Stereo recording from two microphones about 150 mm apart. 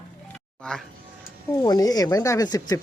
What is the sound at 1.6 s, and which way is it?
Speech, 25° left (ahead or behind).